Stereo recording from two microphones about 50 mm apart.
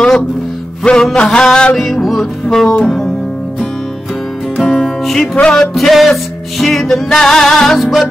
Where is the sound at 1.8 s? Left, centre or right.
Centre.